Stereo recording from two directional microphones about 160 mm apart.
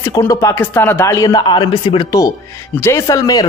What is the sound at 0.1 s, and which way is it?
A man's voice, 20° left (ahead or behind).